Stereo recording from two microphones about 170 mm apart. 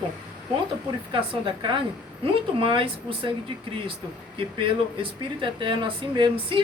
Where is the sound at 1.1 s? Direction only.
30° right (ahead or behind).